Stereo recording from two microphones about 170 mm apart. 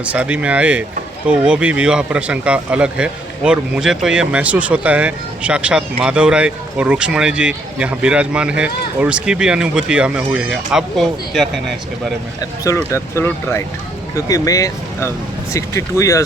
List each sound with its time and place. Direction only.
0.0 s speech: 10° right (ahead or behind)
12.4 s speech: 20° left (ahead or behind)